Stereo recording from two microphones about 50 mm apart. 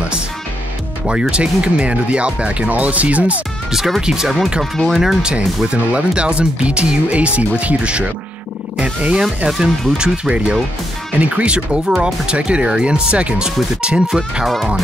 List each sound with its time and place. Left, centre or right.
1.3 s speech: right
3.7 s speech: centre
5.2 s speech: centre
9.5 s speech: centre
14.4 s speech: centre